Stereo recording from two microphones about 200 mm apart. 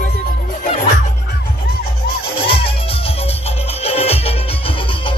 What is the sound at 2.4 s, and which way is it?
Music, 25° left (ahead or behind).